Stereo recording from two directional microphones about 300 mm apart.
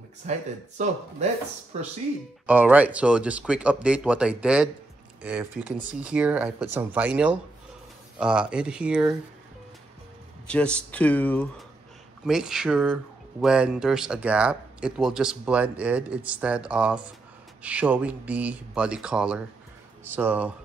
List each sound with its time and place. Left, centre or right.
0.2 s speech: right
2.4 s speech: centre
10.4 s speech: centre